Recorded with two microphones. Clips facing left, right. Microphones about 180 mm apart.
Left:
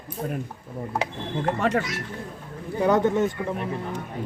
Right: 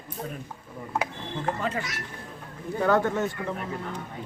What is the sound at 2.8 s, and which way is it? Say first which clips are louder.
Speech: left 3 dB; 20° left (ahead or behind).